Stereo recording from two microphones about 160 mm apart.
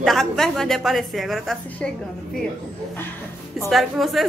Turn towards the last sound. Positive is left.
turn(degrees=0)  # may be behind; listen again after turning